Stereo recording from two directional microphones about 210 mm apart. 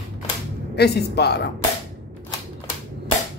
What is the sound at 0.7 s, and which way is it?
Speech, 50° left (ahead or behind).